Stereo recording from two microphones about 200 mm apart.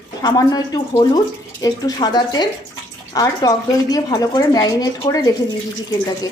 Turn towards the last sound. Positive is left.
turn(degrees=20)  # may be behind; listen again after turning